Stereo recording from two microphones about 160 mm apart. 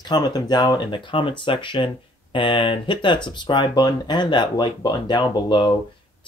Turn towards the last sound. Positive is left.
turn(degrees=30)  # may be behind; listen again after turning